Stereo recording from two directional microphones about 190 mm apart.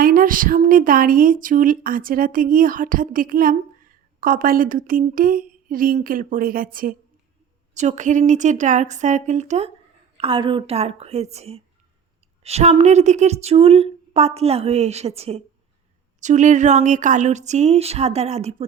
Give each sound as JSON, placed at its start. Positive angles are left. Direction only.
{"t": 0.0, "sound": "a woman's voice", "side_deg": -45}